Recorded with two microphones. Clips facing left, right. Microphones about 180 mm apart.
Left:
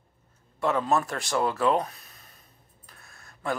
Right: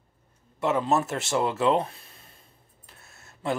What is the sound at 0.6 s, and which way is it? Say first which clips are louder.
Speech: right 1 dB; 20° right (ahead or behind).